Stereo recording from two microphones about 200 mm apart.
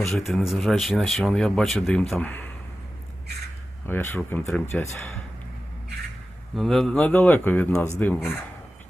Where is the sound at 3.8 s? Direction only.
10° left (ahead or behind).